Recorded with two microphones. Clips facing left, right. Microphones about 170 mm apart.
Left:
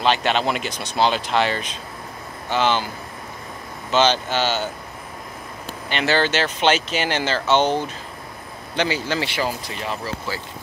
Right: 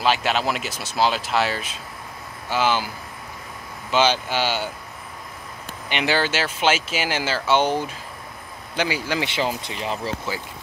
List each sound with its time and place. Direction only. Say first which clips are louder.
0.0 s speech: left 2 dB; 5° right (ahead or behind)
3.9 s speech: left 1 dB; 10° right (ahead or behind)
5.9 s speech: left 2 dB; 15° right (ahead or behind)